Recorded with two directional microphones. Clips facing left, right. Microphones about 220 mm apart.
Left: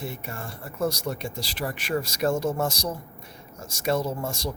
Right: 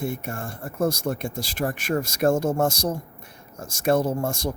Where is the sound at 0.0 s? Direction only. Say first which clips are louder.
Right 5 dB; 50° right (ahead or behind).